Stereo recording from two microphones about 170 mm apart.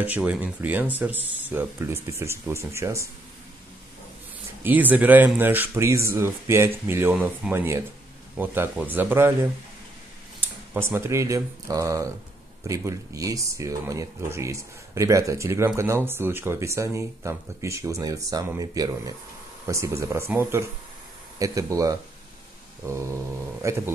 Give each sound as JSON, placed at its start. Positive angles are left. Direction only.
{"t": 0.0, "sound": "speech", "side_deg": -10}
{"t": 4.6, "sound": "speech", "side_deg": -10}
{"t": 10.7, "sound": "speech", "side_deg": -15}